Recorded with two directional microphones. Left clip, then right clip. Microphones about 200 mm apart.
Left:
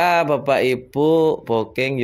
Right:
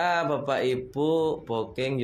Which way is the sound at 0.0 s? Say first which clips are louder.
Left 8 dB; 30° left (ahead or behind).